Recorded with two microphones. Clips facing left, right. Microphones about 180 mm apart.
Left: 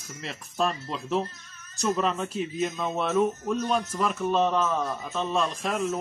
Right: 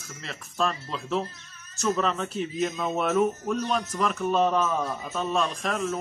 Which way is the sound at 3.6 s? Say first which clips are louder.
Left 1 dB; 5° left (ahead or behind).